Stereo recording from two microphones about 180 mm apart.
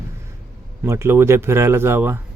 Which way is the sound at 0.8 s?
15° right (ahead or behind).